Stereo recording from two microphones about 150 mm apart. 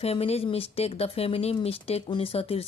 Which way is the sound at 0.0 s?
45° left (ahead or behind).